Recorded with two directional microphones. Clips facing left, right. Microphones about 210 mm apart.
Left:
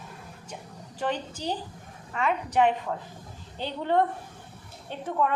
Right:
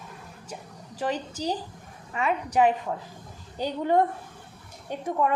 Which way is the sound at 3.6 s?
40° right (ahead or behind).